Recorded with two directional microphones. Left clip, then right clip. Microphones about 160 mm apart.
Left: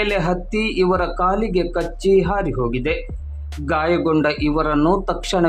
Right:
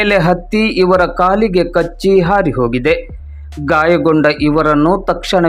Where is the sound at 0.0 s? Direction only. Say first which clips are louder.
Right 8 dB; 35° right (ahead or behind).